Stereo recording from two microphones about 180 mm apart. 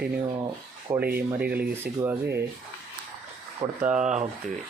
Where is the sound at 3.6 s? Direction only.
30° right (ahead or behind).